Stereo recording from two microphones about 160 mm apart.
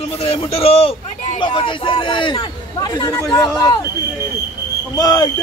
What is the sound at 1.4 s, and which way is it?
A man's voice, 30° left (ahead or behind).